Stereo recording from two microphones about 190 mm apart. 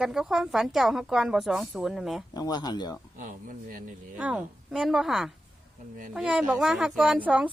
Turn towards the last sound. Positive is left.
turn(degrees=-5)  # may be behind; listen again after turning